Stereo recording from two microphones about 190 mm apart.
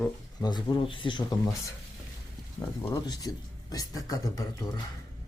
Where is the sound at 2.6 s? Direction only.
10° left (ahead or behind).